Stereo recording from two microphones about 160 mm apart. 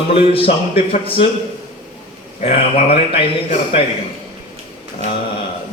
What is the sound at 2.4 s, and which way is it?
Speech, 40° left (ahead or behind).